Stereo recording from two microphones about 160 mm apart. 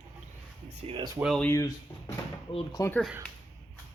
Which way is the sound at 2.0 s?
35° left (ahead or behind).